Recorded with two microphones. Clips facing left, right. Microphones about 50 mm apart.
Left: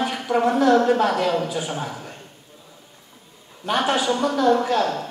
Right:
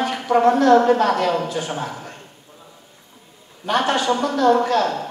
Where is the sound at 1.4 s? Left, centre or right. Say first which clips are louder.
Right 1 dB; centre.